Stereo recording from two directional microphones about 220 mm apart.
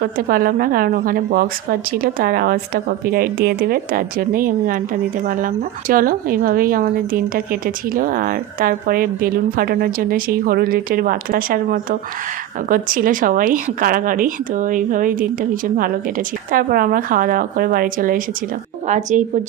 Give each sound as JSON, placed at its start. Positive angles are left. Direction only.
{"t": 0.0, "sound": "a woman's voice", "side_deg": -40}
{"t": 5.9, "sound": "a woman's voice", "side_deg": -40}